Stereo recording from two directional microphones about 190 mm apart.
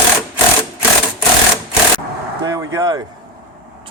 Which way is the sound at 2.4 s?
15° right (ahead or behind).